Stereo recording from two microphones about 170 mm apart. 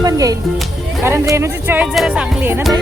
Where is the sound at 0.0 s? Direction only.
20° right (ahead or behind).